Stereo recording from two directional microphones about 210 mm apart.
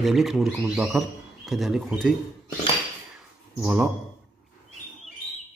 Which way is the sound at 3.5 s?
5° right (ahead or behind).